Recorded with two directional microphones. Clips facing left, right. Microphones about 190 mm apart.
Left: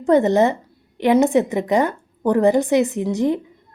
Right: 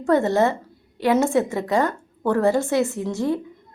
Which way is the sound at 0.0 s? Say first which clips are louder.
Left 3 dB; 20° left (ahead or behind).